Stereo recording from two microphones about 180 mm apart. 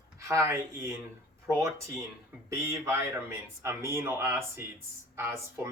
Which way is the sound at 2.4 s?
15° right (ahead or behind).